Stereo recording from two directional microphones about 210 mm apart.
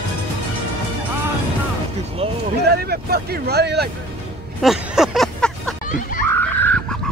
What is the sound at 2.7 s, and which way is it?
Speech, 50° right (ahead or behind).